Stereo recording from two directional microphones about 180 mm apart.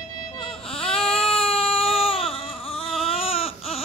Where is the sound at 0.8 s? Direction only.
30° left (ahead or behind).